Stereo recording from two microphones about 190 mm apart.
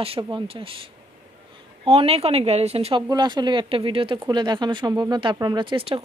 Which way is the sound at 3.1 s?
20° right (ahead or behind).